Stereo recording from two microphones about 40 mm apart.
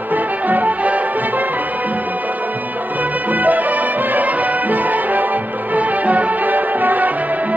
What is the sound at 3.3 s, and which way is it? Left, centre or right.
Music, right.